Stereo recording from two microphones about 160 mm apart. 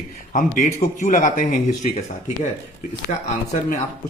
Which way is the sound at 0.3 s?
55° left (ahead or behind).